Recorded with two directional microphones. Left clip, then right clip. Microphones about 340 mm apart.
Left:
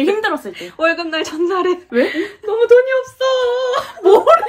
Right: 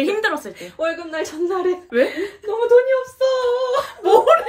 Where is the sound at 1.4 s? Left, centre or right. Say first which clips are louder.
Left 3 dB; left.